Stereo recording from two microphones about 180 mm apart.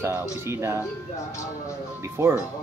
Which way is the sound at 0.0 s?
15° right (ahead or behind).